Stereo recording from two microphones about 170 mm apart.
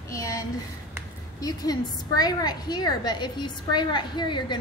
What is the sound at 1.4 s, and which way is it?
A woman's voice, 25° left (ahead or behind).